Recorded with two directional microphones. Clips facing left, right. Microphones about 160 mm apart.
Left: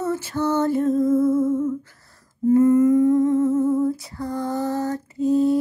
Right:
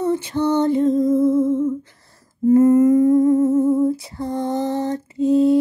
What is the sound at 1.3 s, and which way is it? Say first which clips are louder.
Humming: right 2 dB; 25° right (ahead or behind).